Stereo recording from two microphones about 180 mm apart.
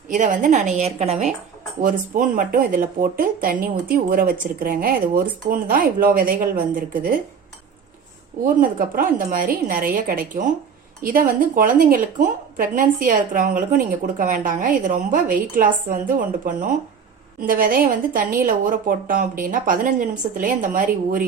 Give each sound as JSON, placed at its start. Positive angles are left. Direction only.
{"t": 0.1, "sound": "a woman's voice", "side_deg": -45}
{"t": 1.8, "sound": "a woman's voice", "side_deg": -50}
{"t": 8.6, "sound": "a woman's voice", "side_deg": -50}